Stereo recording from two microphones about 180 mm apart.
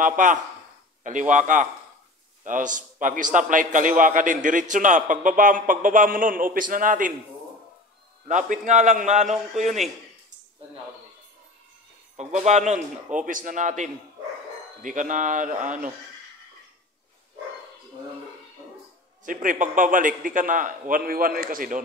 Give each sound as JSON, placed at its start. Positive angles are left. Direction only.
{"t": 0.0, "sound": "a man's voice", "side_deg": -45}
{"t": 8.3, "sound": "a man's voice", "side_deg": -45}
{"t": 12.2, "sound": "a man's voice", "side_deg": -40}
{"t": 19.2, "sound": "a man's voice", "side_deg": -45}